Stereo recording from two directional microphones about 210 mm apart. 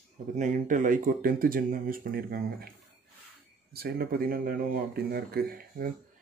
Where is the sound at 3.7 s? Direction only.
45° right (ahead or behind).